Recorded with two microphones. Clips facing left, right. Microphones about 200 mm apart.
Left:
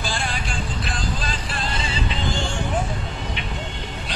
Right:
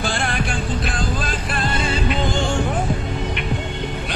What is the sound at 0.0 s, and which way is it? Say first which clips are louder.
Music: right 5 dB; 60° right (ahead or behind).